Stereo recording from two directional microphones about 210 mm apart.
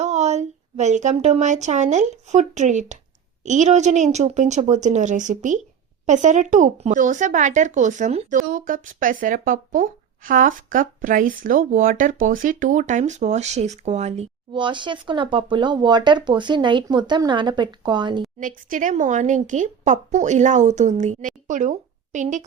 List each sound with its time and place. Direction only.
0.0 s a woman's voice: 35° right (ahead or behind)
18.3 s speech: 40° right (ahead or behind)